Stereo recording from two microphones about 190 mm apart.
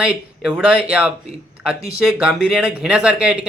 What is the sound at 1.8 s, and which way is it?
Speech, 30° right (ahead or behind).